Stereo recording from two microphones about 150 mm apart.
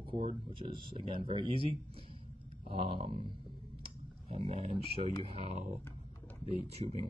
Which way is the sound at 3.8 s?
40° right (ahead or behind).